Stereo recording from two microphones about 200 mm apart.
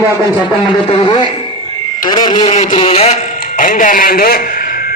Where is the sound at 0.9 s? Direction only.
25° left (ahead or behind).